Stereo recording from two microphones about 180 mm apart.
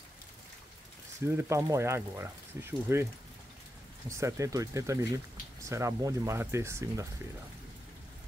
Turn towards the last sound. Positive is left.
turn(degrees=-15)  # may be behind; listen again after turning